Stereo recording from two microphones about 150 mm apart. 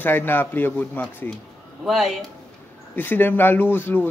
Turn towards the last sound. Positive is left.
turn(degrees=15)  # may be behind; listen again after turning